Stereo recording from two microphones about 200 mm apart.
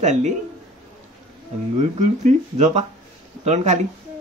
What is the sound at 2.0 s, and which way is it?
Speech, 35° right (ahead or behind).